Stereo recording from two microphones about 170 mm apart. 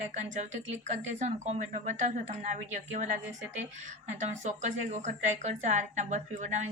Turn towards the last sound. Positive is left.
turn(degrees=-45)  # may be behind; listen again after turning